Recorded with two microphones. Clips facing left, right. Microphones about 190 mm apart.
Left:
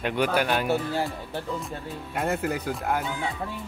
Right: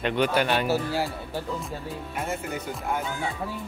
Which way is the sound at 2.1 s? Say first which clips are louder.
Left 5 dB; 70° left (ahead or behind).